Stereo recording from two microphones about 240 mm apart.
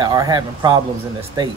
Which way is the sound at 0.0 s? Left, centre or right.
Centre.